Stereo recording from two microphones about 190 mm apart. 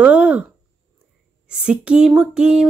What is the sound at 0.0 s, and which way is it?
Speech, 5° right (ahead or behind).